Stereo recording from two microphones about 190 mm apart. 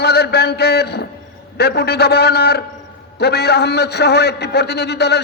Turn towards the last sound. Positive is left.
turn(degrees=60)  # may be behind; listen again after turning